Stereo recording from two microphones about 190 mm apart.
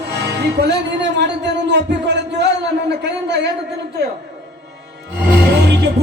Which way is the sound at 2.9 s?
65° right (ahead or behind).